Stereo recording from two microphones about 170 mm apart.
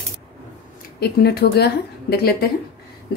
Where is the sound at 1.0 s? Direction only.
70° left (ahead or behind).